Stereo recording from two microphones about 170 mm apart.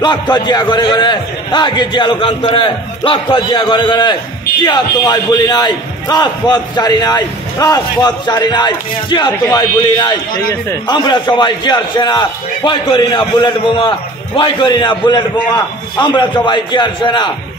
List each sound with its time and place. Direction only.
0.0 s a man's voice: 25° left (ahead or behind)